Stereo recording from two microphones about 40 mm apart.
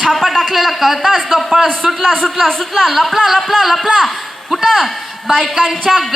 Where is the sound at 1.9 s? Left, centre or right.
Centre.